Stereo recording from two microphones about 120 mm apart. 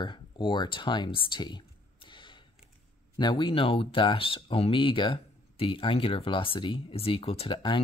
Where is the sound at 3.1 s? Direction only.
40° left (ahead or behind).